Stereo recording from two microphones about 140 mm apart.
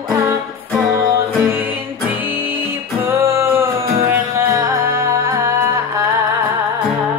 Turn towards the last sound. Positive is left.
turn(degrees=-20)  # may be behind; listen again after turning